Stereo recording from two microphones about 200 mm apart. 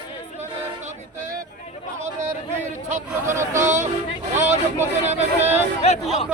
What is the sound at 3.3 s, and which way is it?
Music, 15° right (ahead or behind).